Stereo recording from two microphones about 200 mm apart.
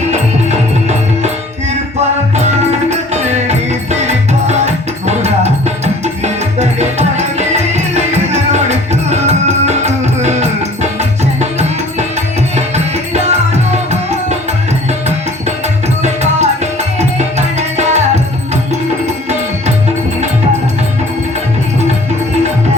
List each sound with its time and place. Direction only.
3.1 s music: 35° right (ahead or behind)
16.0 s music: 35° right (ahead or behind)